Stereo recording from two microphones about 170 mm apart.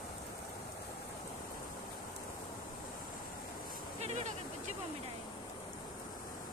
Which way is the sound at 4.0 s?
45° right (ahead or behind).